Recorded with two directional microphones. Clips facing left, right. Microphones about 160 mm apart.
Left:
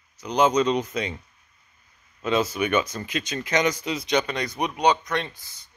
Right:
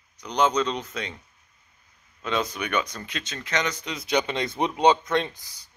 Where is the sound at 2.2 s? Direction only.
5° left (ahead or behind).